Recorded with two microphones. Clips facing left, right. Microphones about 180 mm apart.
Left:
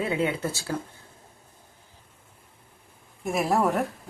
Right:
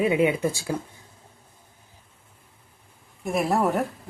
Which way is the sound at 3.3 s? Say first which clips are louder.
Right 1 dB; centre (ahead or behind).